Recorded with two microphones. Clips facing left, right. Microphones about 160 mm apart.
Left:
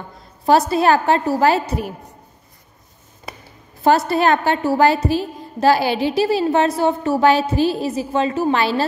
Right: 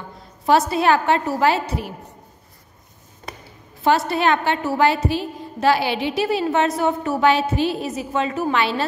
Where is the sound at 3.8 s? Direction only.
40° left (ahead or behind).